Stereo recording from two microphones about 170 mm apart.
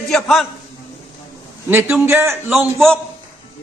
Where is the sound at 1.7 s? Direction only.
10° right (ahead or behind).